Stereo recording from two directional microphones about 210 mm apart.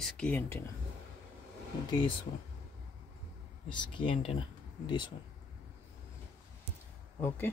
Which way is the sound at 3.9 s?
25° left (ahead or behind).